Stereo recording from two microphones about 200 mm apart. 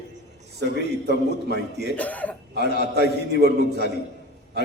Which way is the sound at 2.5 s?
55° right (ahead or behind).